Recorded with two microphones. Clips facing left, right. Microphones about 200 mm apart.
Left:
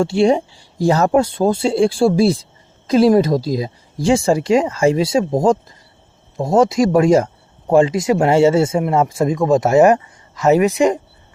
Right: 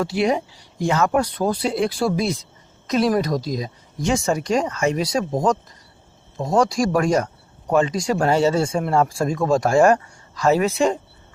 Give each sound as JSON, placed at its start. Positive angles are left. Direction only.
{"t": 0.0, "sound": "speech", "side_deg": 30}
{"t": 1.2, "sound": "speech", "side_deg": 25}